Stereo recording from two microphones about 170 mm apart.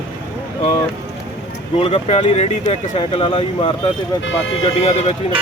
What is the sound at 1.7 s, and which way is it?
Speech, 35° left (ahead or behind).